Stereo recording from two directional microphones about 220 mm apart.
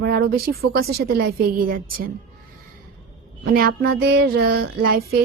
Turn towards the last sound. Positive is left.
turn(degrees=-45)  # may be behind; listen again after turning